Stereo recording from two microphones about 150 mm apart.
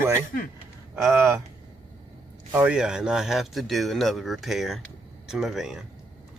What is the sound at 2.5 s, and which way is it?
Speech, 5° right (ahead or behind).